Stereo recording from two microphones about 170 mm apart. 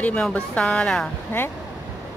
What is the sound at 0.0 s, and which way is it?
Speech, 10° left (ahead or behind).